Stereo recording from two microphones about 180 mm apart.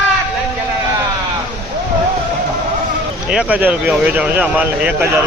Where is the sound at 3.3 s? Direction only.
5° right (ahead or behind).